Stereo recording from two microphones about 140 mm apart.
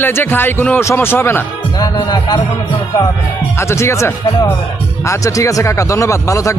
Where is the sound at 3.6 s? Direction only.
20° left (ahead or behind).